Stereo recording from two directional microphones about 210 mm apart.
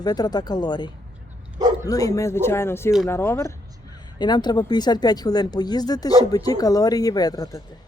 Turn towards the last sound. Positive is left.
turn(degrees=15)  # may be behind; listen again after turning